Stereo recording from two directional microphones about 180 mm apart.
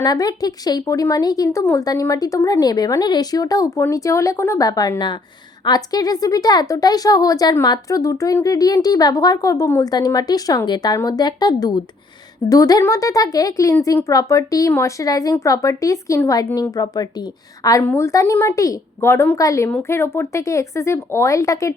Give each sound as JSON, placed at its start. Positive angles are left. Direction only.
{"t": 0.0, "sound": "a woman's voice", "side_deg": 20}